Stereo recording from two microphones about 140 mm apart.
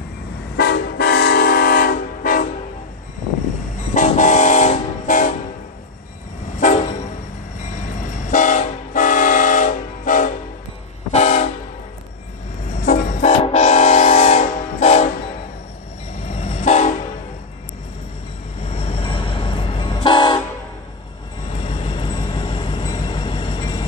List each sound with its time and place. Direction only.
0.7 s train: 90° left
3.9 s train: 60° left (ahead or behind)
6.6 s train: 55° left (ahead or behind)
11.1 s train: 55° left (ahead or behind)
12.8 s vehicle: 75° left (ahead or behind)
13.3 s train: 45° left (ahead or behind)
16.2 s train: 50° left (ahead or behind)
18.7 s train: 40° left (ahead or behind)
21.5 s vehicle: 45° left (ahead or behind)